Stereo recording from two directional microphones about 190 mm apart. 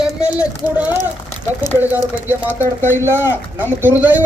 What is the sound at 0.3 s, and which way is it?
Speech, 5° right (ahead or behind).